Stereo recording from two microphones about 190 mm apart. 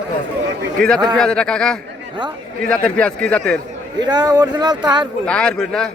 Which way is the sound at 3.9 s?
20° right (ahead or behind).